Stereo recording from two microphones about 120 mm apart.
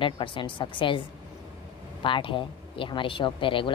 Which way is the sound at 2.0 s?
45° left (ahead or behind).